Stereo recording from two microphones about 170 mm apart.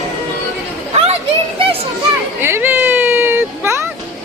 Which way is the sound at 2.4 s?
10° right (ahead or behind).